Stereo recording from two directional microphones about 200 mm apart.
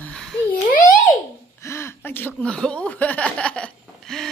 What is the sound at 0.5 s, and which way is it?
Babbling, 45° left (ahead or behind).